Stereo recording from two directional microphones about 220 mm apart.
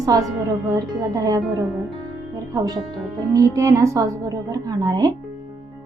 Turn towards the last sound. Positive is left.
turn(degrees=-15)  # may be behind; listen again after turning